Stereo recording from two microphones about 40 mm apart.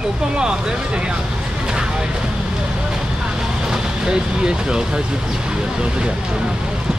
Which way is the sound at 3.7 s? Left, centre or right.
Centre.